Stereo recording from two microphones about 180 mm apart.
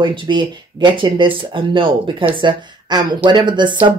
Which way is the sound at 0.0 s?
25° right (ahead or behind).